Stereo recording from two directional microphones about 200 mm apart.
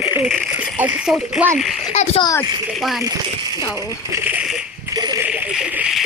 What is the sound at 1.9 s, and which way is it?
Speech, 30° left (ahead or behind).